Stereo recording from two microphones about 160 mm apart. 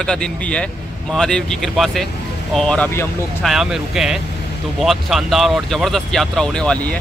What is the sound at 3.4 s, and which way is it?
Speech, 5° right (ahead or behind).